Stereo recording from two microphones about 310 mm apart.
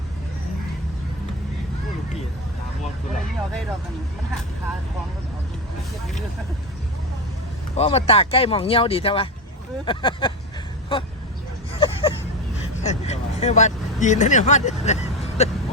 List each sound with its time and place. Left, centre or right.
7.8 s speech: centre
11.7 s a sound: centre
12.8 s vehicle: left